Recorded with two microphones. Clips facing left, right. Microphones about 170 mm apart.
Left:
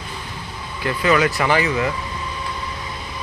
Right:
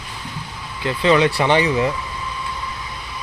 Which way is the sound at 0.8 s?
25° right (ahead or behind).